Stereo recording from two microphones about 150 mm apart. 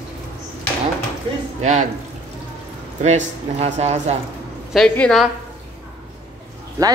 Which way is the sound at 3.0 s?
50° right (ahead or behind).